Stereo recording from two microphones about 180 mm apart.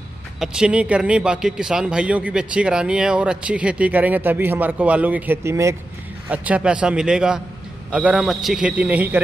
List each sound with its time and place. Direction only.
0.4 s a man's voice: 5° right (ahead or behind)